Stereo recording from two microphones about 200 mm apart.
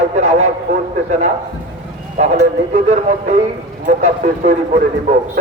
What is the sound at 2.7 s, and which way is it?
Speech, 35° right (ahead or behind).